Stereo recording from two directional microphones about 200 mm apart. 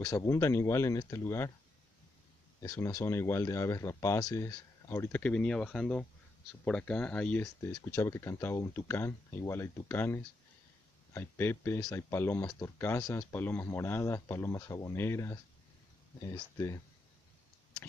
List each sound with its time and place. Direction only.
0.0 s speech: 15° left (ahead or behind)
2.6 s speech: 15° left (ahead or behind)
16.5 s speech: 15° left (ahead or behind)